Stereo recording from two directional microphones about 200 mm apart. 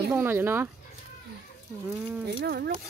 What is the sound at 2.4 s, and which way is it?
Speech, 55° right (ahead or behind).